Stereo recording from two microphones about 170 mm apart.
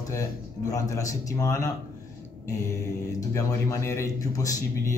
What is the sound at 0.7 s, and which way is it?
Speech, 20° left (ahead or behind).